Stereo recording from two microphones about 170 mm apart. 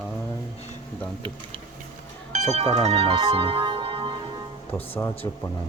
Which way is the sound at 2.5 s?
40° right (ahead or behind).